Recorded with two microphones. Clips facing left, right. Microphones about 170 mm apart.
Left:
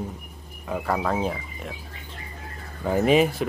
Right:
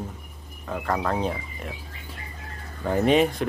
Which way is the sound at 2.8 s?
5° left (ahead or behind).